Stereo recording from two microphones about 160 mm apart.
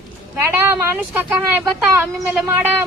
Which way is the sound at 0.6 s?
15° right (ahead or behind).